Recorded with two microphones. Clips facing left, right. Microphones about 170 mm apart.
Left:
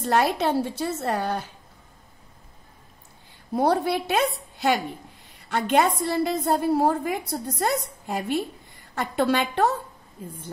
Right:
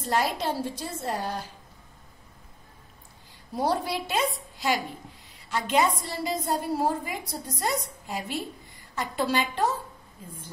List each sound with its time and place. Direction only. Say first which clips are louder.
0.0 s a woman's voice: left 5 dB; 65° left (ahead or behind)
3.5 s a woman's voice: left 5 dB; 60° left (ahead or behind)